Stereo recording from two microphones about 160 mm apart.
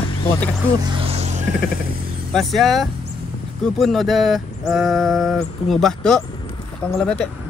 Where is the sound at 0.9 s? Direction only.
35° right (ahead or behind).